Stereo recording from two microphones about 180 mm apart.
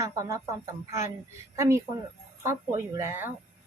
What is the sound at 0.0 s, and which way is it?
Speech, 15° right (ahead or behind).